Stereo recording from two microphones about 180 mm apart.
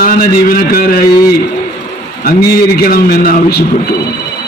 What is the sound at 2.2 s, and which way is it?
A man's voice, 60° left (ahead or behind).